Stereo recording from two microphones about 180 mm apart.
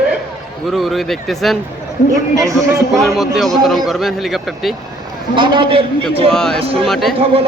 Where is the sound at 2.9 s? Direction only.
Centre (ahead or behind).